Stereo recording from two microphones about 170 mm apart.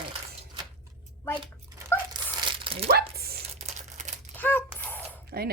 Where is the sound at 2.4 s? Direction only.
30° right (ahead or behind).